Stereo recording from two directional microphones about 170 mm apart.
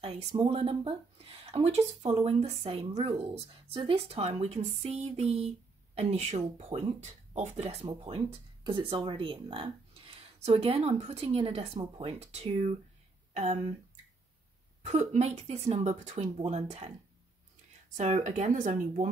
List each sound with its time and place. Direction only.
0.4 s speech: 35° right (ahead or behind)
14.9 s speech: 40° right (ahead or behind)
17.9 s speech: 45° right (ahead or behind)